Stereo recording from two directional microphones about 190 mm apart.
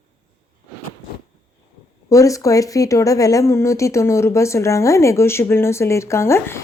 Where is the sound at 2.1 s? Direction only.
15° left (ahead or behind).